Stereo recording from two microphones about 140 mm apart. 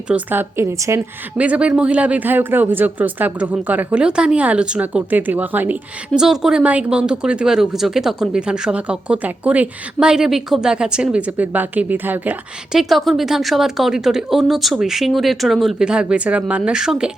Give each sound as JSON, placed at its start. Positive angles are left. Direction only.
{"t": 0.1, "sound": "a woman's voice", "side_deg": -15}
{"t": 1.4, "sound": "a woman's voice", "side_deg": -10}
{"t": 12.9, "sound": "speech", "side_deg": 0}